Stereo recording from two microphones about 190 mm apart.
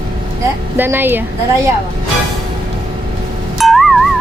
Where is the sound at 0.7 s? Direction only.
10° right (ahead or behind).